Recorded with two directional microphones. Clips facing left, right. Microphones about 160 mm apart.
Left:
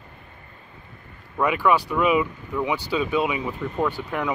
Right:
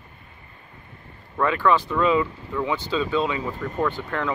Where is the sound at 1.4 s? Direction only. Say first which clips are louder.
Even; 10° left (ahead or behind).